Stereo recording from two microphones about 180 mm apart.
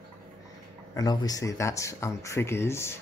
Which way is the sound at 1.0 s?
20° left (ahead or behind).